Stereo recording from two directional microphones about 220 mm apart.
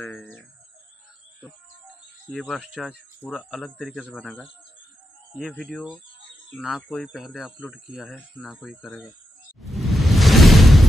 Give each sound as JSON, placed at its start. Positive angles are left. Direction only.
{"t": 0.0, "sound": "speech", "side_deg": 10}
{"t": 2.3, "sound": "speech", "side_deg": 5}
{"t": 9.6, "sound": "whoosh", "side_deg": 0}